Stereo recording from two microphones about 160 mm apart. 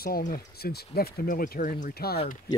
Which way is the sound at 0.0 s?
70° left (ahead or behind).